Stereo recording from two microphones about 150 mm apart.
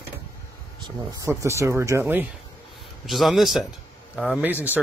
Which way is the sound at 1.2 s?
20° right (ahead or behind).